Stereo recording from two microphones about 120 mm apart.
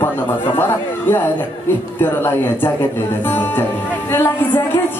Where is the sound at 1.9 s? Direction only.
20° left (ahead or behind).